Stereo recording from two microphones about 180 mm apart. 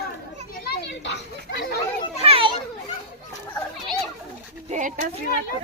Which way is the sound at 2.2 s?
30° right (ahead or behind).